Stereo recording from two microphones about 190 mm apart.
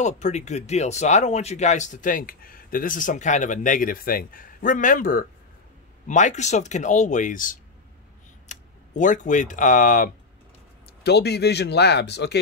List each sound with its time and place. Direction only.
0.0 s speech: 40° left (ahead or behind)
11.1 s speech: 60° left (ahead or behind)